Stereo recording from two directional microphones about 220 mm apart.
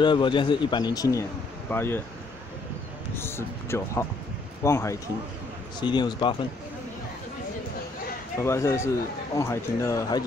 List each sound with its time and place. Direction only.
0.0 s a man's voice: 20° left (ahead or behind)
3.2 s a man's voice: 10° left (ahead or behind)
8.4 s speech: 15° left (ahead or behind)